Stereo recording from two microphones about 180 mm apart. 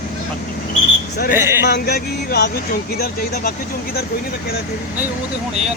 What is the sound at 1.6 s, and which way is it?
Speech, 65° left (ahead or behind).